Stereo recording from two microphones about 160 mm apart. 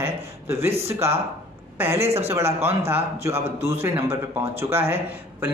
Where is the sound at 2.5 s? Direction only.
40° right (ahead or behind).